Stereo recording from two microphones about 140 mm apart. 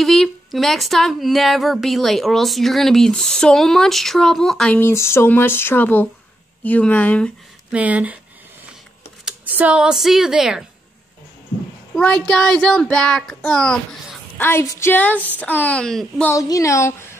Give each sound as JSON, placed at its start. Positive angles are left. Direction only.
{"t": 0.0, "sound": "a woman's voice", "side_deg": 0}
{"t": 7.7, "sound": "speech", "side_deg": -10}
{"t": 9.2, "sound": "speech", "side_deg": -10}
{"t": 11.9, "sound": "a woman's voice", "side_deg": 10}
{"t": 14.4, "sound": "a woman's voice", "side_deg": 15}
{"t": 16.3, "sound": "speech", "side_deg": 25}